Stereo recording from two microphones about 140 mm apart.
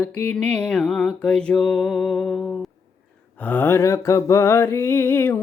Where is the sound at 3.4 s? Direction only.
10° left (ahead or behind).